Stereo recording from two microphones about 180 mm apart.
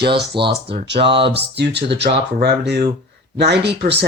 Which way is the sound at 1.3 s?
70° right (ahead or behind).